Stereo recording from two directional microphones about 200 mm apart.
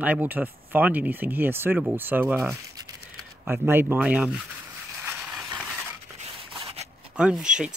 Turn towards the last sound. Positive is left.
turn(degrees=-5)  # may be behind; listen again after turning